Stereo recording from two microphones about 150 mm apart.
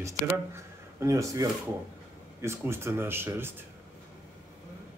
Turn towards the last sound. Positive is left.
turn(degrees=-15)  # may be behind; listen again after turning